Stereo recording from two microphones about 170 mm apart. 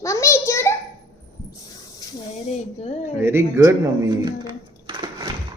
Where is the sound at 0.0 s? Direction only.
15° left (ahead or behind).